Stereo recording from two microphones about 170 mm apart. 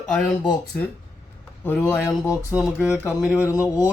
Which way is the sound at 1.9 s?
20° left (ahead or behind).